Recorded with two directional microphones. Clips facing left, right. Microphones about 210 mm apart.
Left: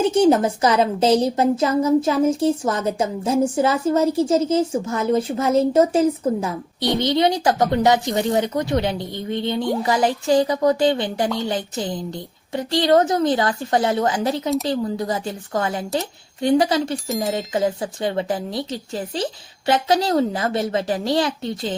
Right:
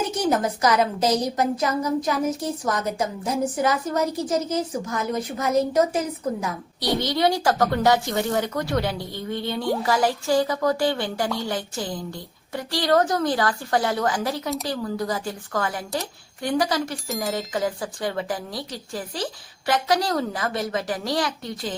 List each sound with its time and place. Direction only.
0.1 s speech: 25° left (ahead or behind)